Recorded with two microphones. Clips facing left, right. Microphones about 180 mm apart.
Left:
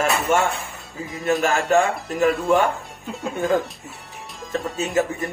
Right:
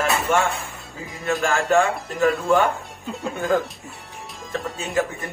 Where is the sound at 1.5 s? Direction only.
20° left (ahead or behind).